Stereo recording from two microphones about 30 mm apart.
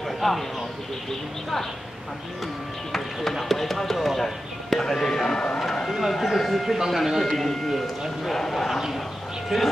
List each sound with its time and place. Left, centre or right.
0.2 s speech: centre
2.9 s speech: centre
4.7 s speech: centre
5.9 s speech: centre
9.5 s speech: centre